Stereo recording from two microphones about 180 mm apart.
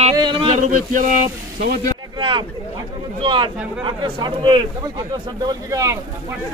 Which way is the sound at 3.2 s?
25° right (ahead or behind).